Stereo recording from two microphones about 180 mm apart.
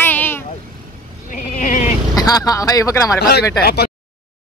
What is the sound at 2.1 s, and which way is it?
Speech, 20° left (ahead or behind).